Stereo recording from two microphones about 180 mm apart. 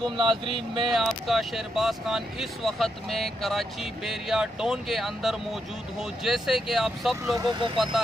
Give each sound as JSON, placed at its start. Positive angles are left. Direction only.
{"t": 0.2, "sound": "speech", "side_deg": -30}
{"t": 0.6, "sound": "speech", "side_deg": 0}
{"t": 7.3, "sound": "speech", "side_deg": -25}